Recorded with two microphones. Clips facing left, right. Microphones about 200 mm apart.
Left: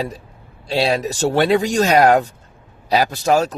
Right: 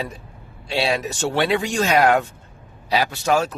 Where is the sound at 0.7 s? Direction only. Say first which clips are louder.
Left 4 dB; 40° left (ahead or behind).